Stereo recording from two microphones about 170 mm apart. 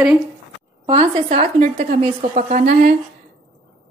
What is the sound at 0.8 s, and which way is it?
Speech, 30° right (ahead or behind).